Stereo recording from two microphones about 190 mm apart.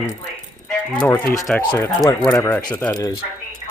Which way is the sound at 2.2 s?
20° left (ahead or behind).